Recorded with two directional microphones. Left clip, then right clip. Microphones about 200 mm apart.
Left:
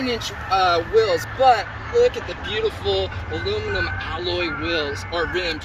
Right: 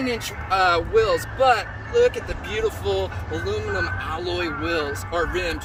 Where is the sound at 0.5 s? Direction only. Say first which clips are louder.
Left 1 dB; 25° left (ahead or behind).